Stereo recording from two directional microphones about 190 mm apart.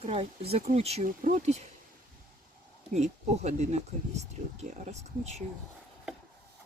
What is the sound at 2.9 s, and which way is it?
Speech, 40° right (ahead or behind).